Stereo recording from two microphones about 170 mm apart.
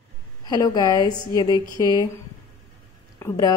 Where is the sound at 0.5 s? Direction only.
20° left (ahead or behind).